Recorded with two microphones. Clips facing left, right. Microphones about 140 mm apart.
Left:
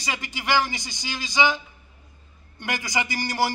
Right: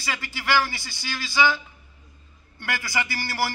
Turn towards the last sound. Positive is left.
turn(degrees=20)  # may be behind; listen again after turning